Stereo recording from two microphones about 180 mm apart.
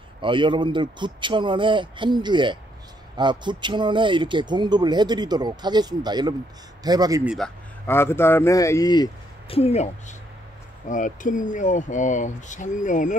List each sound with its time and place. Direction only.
0.2 s speech: 25° right (ahead or behind)
7.2 s speech: centre (ahead or behind)
7.8 s speech: 10° left (ahead or behind); by 13.1 s 45° left (ahead or behind)